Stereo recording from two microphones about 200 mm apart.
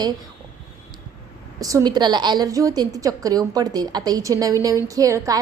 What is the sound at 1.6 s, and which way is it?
A woman's voice, 15° right (ahead or behind).